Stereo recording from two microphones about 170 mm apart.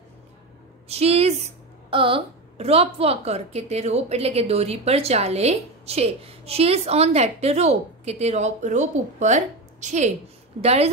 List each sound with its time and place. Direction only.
0.8 s a woman's voice: 35° right (ahead or behind)